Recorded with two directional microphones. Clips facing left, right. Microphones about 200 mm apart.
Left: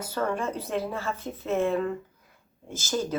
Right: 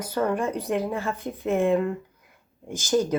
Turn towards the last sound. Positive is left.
turn(degrees=-15)  # may be behind; listen again after turning